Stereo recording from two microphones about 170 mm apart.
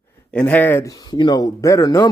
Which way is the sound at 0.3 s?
10° left (ahead or behind).